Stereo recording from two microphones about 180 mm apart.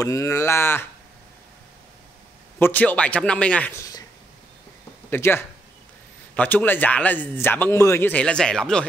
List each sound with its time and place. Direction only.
0.0 s speech: 15° left (ahead or behind)
2.6 s speech: 10° left (ahead or behind)
5.1 s speech: 15° left (ahead or behind)